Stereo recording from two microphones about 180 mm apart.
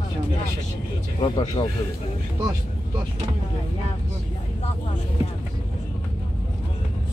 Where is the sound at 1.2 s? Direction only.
30° left (ahead or behind).